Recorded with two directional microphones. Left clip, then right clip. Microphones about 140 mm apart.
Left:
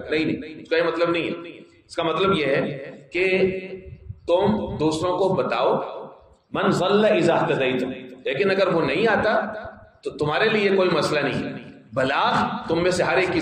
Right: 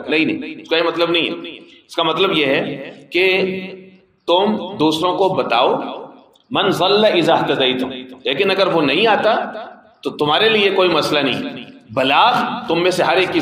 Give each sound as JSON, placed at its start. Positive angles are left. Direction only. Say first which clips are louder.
{"t": 0.1, "sound": "a man's voice", "louder": "right 7 dB", "side_deg": -35}